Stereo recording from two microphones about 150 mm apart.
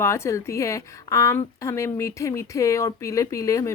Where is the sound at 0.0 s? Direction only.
20° left (ahead or behind).